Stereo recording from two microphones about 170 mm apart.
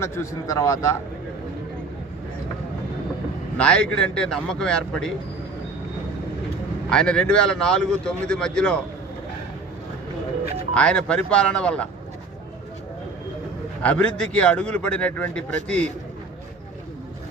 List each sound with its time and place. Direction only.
0.0 s a man's voice: 15° left (ahead or behind)
3.6 s a man's voice: 5° left (ahead or behind)
6.9 s a man's voice: 5° left (ahead or behind)
10.8 s a man's voice: 5° left (ahead or behind)
13.8 s a man's voice: 5° left (ahead or behind)